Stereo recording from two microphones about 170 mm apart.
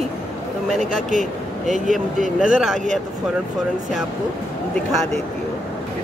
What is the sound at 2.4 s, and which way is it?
Speech, centre (ahead or behind).